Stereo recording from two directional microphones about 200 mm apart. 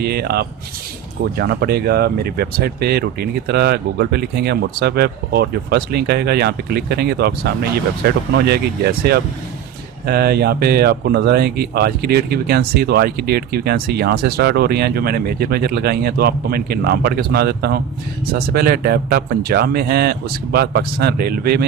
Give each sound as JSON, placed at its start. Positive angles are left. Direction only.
{"t": 0.0, "sound": "speech", "side_deg": -55}